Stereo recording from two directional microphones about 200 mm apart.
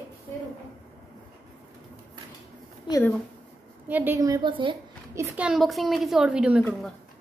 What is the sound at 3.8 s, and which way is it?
Speech, 10° right (ahead or behind).